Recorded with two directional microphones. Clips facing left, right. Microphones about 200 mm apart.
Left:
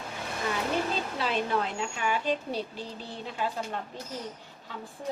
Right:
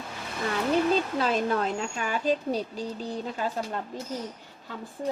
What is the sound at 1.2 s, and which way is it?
Speech, 45° right (ahead or behind).